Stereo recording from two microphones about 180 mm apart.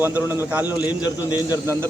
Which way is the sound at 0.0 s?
10° right (ahead or behind).